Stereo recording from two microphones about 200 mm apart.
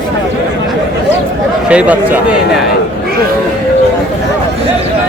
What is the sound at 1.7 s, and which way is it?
Speech, 5° right (ahead or behind).